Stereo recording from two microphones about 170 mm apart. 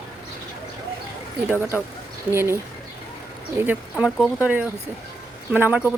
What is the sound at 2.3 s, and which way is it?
Speech, 15° right (ahead or behind).